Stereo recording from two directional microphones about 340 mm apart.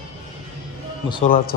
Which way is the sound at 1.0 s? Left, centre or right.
Centre.